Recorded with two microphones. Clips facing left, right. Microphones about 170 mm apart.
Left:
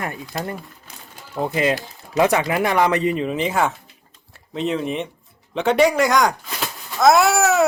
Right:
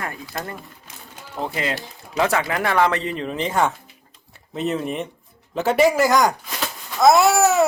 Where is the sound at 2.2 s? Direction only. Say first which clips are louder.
Left 3 dB; 15° left (ahead or behind); by 6.3 s centre (ahead or behind).